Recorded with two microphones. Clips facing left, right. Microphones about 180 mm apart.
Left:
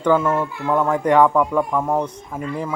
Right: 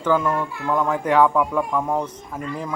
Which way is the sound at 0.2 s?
5° left (ahead or behind).